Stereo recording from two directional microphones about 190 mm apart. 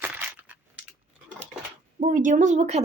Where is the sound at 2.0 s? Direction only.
45° right (ahead or behind).